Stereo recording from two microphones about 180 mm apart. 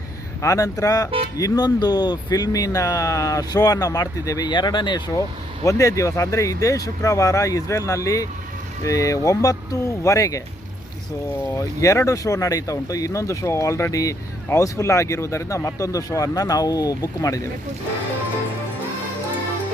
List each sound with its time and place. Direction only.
0.4 s speech: 15° left (ahead or behind)
11.5 s speech: 20° left (ahead or behind)